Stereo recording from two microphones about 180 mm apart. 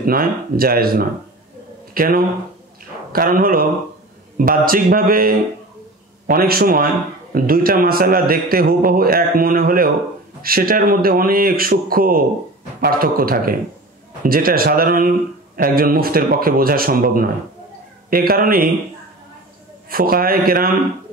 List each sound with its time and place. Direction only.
0.0 s speech: 55° right (ahead or behind)
19.9 s speech: 55° right (ahead or behind)